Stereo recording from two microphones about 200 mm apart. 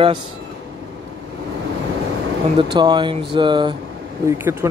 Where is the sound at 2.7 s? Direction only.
25° right (ahead or behind).